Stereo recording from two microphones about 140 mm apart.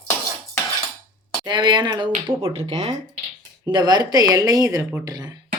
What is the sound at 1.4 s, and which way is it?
Speech, 30° right (ahead or behind).